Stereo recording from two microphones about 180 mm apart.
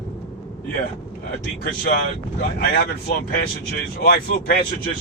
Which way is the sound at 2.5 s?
60° left (ahead or behind).